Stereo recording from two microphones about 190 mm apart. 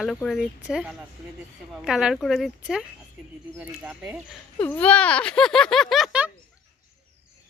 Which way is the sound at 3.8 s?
10° right (ahead or behind).